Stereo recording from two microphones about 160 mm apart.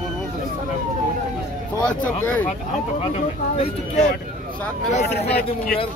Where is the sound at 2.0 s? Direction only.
10° left (ahead or behind).